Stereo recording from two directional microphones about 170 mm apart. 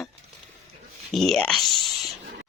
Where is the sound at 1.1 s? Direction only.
Centre (ahead or behind).